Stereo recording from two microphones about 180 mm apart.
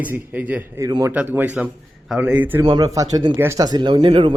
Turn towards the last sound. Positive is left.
turn(degrees=-30)  # may be behind; listen again after turning